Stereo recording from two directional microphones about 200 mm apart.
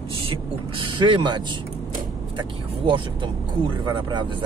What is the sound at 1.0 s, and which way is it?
Speech, 25° right (ahead or behind).